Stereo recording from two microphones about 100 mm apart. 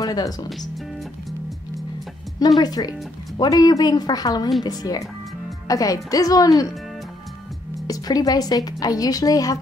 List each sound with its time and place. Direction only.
0.0 s speech: 40° left (ahead or behind)
2.6 s speech: 40° left (ahead or behind)
7.8 s speech: 40° left (ahead or behind)